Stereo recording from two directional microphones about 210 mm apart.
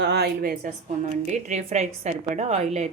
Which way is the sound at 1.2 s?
35° right (ahead or behind).